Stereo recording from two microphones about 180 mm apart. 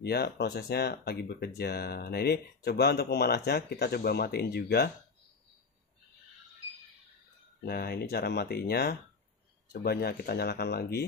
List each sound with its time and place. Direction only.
0.0 s speech: 60° left (ahead or behind)
7.6 s speech: 60° left (ahead or behind)